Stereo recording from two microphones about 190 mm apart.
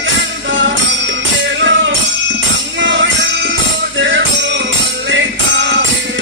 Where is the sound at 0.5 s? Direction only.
75° right (ahead or behind).